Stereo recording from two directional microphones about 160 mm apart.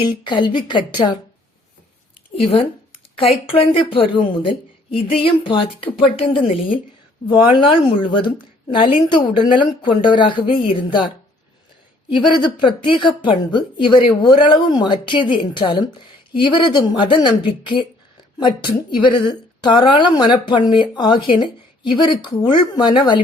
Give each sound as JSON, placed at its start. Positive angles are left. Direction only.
{"t": 0.3, "sound": "a woman's voice", "side_deg": 30}
{"t": 2.3, "sound": "a woman's voice", "side_deg": 35}
{"t": 12.2, "sound": "a woman's voice", "side_deg": 30}
{"t": 18.3, "sound": "a woman's voice", "side_deg": 30}